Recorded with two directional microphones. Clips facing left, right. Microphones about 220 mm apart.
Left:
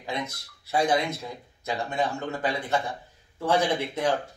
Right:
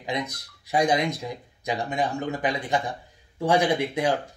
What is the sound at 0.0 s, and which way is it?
Speech, 15° right (ahead or behind).